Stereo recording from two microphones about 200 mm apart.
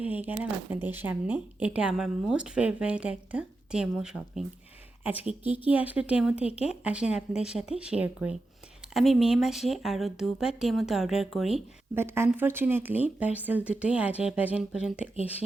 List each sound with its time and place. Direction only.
0.0 s speech: 10° right (ahead or behind)